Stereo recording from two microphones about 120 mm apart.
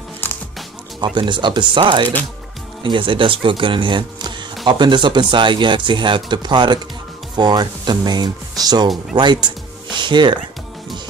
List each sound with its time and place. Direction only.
1.0 s speech: 40° right (ahead or behind)